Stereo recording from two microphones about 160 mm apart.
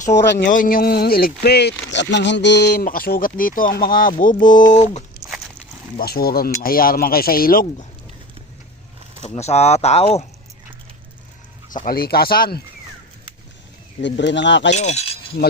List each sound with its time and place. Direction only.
0.0 s speech: 55° left (ahead or behind); by 2.8 s 90° left
2.8 s speech: 65° left (ahead or behind); by 5.0 s 50° left (ahead or behind)
6.0 s speech: 70° left (ahead or behind)
9.2 s speech: 45° left (ahead or behind)
11.7 s speech: 70° left (ahead or behind)
14.0 s speech: 90° left
14.7 s speech: 45° left (ahead or behind)
15.4 s speech: 80° left